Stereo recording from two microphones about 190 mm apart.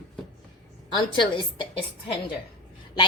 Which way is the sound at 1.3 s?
25° left (ahead or behind).